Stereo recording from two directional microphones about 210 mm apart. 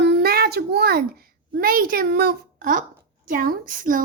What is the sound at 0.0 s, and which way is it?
A child's voice, 50° right (ahead or behind).